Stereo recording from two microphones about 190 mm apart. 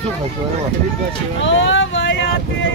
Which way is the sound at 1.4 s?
80° left.